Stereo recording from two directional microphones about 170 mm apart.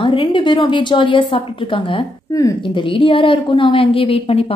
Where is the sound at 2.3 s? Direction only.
20° left (ahead or behind).